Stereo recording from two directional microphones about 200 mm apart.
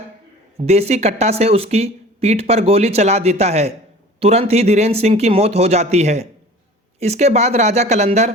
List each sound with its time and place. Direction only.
0.5 s speech: 30° right (ahead or behind)